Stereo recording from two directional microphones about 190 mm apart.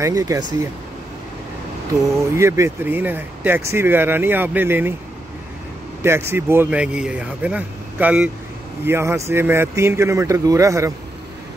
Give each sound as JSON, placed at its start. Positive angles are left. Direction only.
{"t": 0.0, "sound": "speech", "side_deg": -15}
{"t": 2.3, "sound": "speech", "side_deg": -15}
{"t": 6.0, "sound": "speech", "side_deg": -10}